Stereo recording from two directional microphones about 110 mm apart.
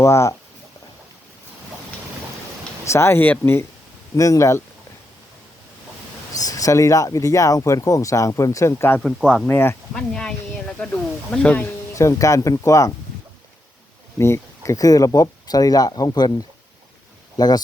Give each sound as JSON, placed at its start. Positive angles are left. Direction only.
{"t": 0.0, "sound": "speech", "side_deg": 25}
{"t": 2.8, "sound": "speech", "side_deg": 25}
{"t": 6.3, "sound": "speech", "side_deg": 35}
{"t": 9.0, "sound": "speech", "side_deg": 5}
{"t": 9.5, "sound": "speech", "side_deg": 20}
{"t": 9.9, "sound": "speech", "side_deg": 5}
{"t": 11.9, "sound": "speech", "side_deg": 30}
{"t": 14.2, "sound": "speech", "side_deg": 25}
{"t": 17.3, "sound": "speech", "side_deg": 35}